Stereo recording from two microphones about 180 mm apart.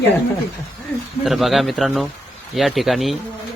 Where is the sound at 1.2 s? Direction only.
Centre (ahead or behind).